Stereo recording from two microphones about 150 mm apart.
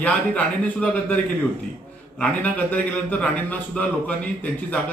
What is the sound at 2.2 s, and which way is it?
A man's voice, 10° left (ahead or behind).